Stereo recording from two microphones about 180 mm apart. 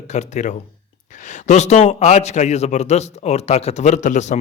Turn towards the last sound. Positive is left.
turn(degrees=40)  # may be behind; listen again after turning